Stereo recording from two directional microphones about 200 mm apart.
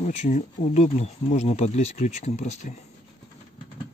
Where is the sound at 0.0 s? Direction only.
35° left (ahead or behind).